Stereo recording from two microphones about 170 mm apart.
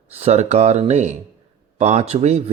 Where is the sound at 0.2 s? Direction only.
40° right (ahead or behind).